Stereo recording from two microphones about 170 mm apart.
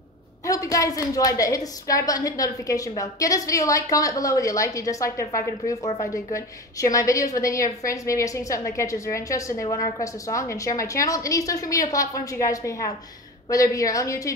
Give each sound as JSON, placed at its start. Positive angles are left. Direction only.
{"t": 0.5, "sound": "a woman's voice", "side_deg": 20}